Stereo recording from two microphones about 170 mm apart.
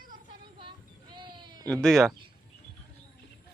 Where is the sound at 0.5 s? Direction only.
30° right (ahead or behind).